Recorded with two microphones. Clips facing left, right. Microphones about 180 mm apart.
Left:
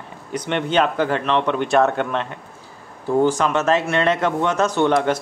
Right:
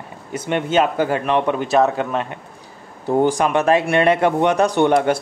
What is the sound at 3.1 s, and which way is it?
Speech, 15° right (ahead or behind).